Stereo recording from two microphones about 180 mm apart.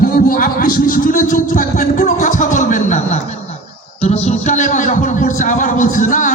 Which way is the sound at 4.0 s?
40° left (ahead or behind).